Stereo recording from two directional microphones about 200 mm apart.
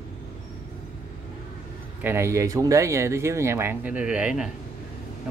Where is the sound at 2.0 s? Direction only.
10° right (ahead or behind).